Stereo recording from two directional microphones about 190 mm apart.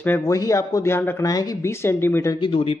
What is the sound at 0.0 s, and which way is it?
Speech, 15° left (ahead or behind).